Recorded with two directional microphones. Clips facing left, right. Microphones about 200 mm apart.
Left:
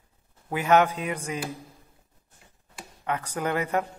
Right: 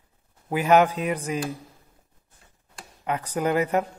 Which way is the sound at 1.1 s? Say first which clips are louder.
Right 4 dB; 30° right (ahead or behind).